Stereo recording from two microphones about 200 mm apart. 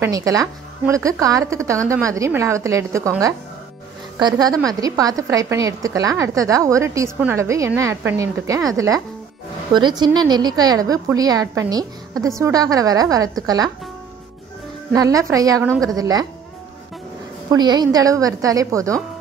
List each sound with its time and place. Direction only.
0.0 s a woman's voice: 15° right (ahead or behind)
14.9 s a woman's voice: 15° right (ahead or behind)
17.5 s a woman's voice: 20° right (ahead or behind)